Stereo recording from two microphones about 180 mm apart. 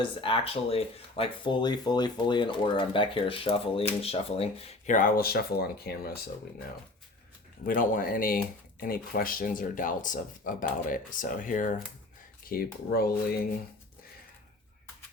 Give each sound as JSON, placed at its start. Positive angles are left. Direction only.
{"t": 0.0, "sound": "speech", "side_deg": 30}
{"t": 4.9, "sound": "speech", "side_deg": 50}
{"t": 7.7, "sound": "speech", "side_deg": 50}